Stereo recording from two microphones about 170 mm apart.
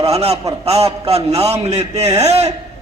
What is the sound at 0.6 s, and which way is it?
A man's voice, 35° right (ahead or behind).